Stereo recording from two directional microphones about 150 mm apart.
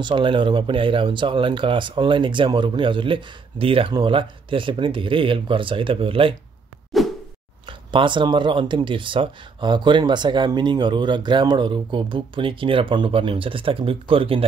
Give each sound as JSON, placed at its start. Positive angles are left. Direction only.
{"t": 0.0, "sound": "speech", "side_deg": -35}
{"t": 6.9, "sound": "a sound", "side_deg": 0}
{"t": 7.6, "sound": "speech", "side_deg": -35}